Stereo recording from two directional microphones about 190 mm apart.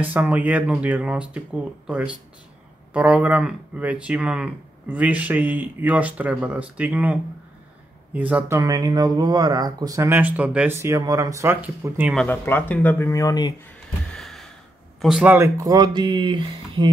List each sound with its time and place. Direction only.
0.0 s speech: 10° right (ahead or behind)
12.2 s speech: 10° left (ahead or behind)
14.1 s sigh: centre (ahead or behind)
15.0 s speech: centre (ahead or behind)
15.3 s speech: 15° right (ahead or behind)